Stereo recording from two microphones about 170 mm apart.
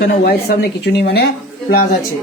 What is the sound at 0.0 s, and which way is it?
Speech, 70° left (ahead or behind).